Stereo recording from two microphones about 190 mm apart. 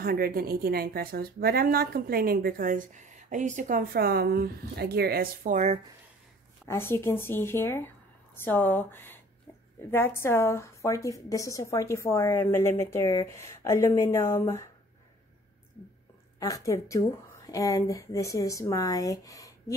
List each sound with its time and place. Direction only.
0.0 s a woman's voice: 50° right (ahead or behind)
6.6 s a woman's voice: 15° left (ahead or behind)
16.3 s a woman's voice: 20° left (ahead or behind)